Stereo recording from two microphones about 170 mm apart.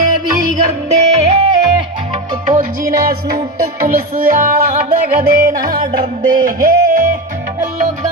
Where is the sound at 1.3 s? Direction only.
30° right (ahead or behind).